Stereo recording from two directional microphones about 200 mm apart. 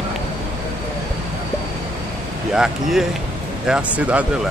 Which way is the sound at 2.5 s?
Centre (ahead or behind).